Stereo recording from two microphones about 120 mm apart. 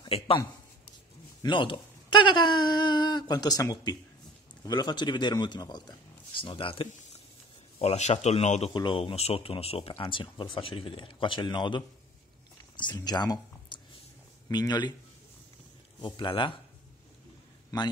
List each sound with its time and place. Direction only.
1.4 s speech: 45° left (ahead or behind)
7.8 s speech: 65° left (ahead or behind)
8.7 s speech: 45° left (ahead or behind)
16.0 s speech: 40° left (ahead or behind)